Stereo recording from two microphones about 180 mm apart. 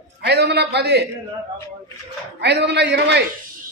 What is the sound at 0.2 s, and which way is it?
Speech, 65° right (ahead or behind).